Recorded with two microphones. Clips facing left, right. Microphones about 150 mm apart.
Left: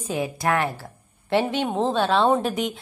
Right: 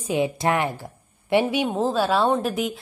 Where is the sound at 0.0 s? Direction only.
15° right (ahead or behind).